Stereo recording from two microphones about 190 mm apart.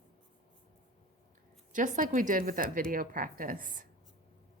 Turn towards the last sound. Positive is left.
turn(degrees=-45)  # may be behind; listen again after turning